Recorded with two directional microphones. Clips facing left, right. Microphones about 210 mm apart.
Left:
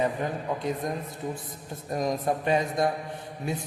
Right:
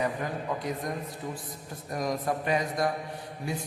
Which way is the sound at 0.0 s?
25° left (ahead or behind).